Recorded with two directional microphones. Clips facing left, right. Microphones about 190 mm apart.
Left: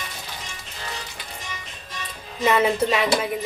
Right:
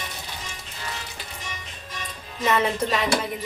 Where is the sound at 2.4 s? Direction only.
10° left (ahead or behind).